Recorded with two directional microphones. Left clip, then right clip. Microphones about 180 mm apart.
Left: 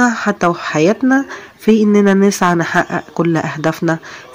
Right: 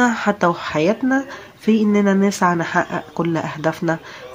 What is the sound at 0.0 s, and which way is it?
Speech, 15° left (ahead or behind).